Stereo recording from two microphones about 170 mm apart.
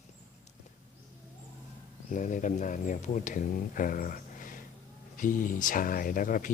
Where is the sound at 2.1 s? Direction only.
50° left (ahead or behind).